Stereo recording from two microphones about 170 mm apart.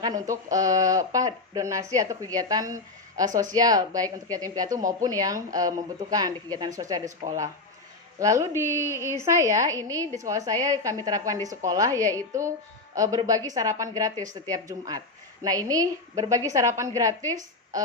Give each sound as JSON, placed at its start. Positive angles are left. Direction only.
{"t": 0.0, "sound": "a woman's voice", "side_deg": -20}